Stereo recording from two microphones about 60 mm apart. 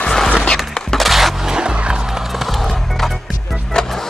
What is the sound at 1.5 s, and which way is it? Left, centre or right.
Skateboard, centre.